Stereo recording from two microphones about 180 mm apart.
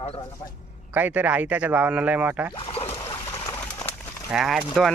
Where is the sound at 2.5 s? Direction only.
30° left (ahead or behind).